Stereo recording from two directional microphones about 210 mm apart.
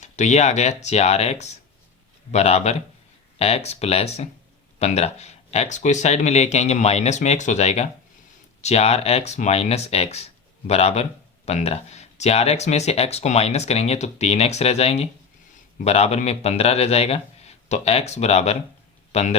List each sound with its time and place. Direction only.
0.0 s speech: 35° left (ahead or behind)